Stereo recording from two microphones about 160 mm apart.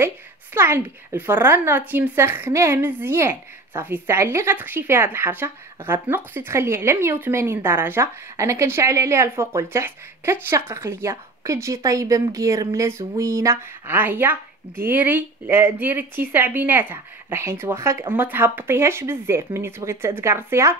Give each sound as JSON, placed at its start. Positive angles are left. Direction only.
{"t": 0.6, "sound": "speech", "side_deg": -15}